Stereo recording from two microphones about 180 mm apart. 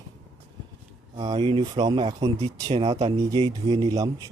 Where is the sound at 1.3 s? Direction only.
25° right (ahead or behind).